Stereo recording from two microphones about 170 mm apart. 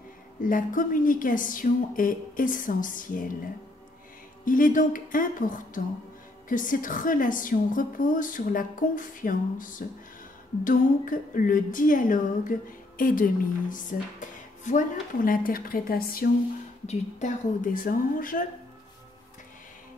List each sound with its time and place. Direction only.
0.4 s a woman's voice: 50° left (ahead or behind)
4.5 s a woman's voice: 55° left (ahead or behind)
16.8 s a woman's voice: 45° left (ahead or behind)